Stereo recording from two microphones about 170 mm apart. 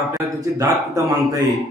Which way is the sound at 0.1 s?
20° right (ahead or behind).